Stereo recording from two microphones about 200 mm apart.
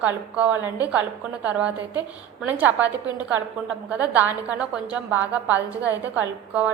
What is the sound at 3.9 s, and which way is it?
A woman's voice, 10° right (ahead or behind).